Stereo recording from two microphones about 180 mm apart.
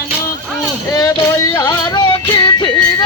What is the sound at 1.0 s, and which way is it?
Music, 20° left (ahead or behind).